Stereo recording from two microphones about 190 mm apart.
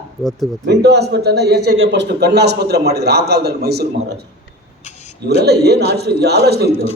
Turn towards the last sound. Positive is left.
turn(degrees=-60)  # may be behind; listen again after turning